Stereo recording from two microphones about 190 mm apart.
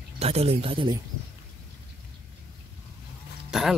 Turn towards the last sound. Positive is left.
turn(degrees=0)  # may be behind; listen again after turning